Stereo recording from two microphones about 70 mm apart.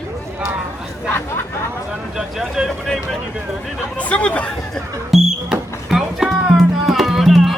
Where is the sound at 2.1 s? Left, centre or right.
Centre.